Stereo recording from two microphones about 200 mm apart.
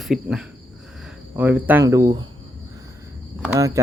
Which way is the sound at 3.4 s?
15° right (ahead or behind).